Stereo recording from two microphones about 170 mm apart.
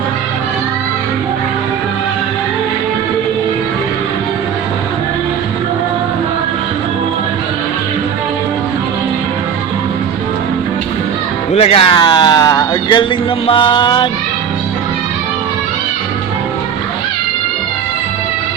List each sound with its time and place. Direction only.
11.5 s a man's voice: 35° left (ahead or behind)
13.5 s music: 30° left (ahead or behind)